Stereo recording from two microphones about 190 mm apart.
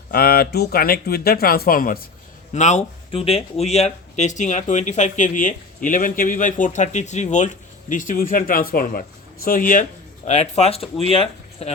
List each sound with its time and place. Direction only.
0.1 s speech: 55° left (ahead or behind)
2.5 s speech: 35° left (ahead or behind)